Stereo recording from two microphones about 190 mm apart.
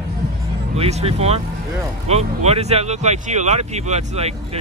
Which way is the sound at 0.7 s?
35° right (ahead or behind).